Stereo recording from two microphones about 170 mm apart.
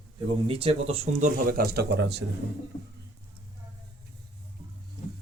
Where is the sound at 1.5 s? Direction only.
60° right (ahead or behind); by 2.2 s 80° right.